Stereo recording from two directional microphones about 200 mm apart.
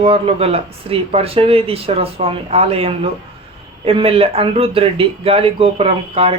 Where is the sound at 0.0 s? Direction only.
30° right (ahead or behind).